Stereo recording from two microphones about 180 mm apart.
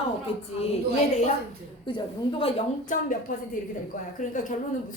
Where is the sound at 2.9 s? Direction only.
50° left (ahead or behind).